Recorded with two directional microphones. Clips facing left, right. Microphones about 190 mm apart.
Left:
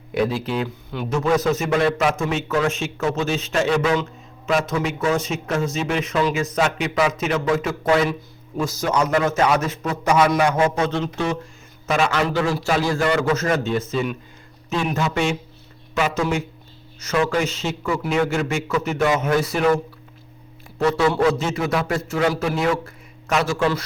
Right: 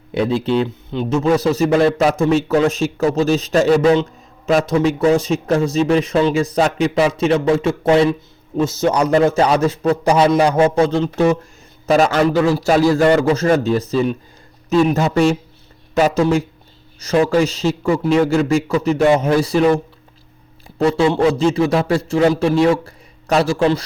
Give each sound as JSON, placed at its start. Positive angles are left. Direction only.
{"t": 0.1, "sound": "a man's voice", "side_deg": -25}